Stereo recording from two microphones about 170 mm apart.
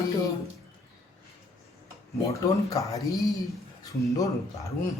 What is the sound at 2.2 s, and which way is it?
Speech, 20° left (ahead or behind).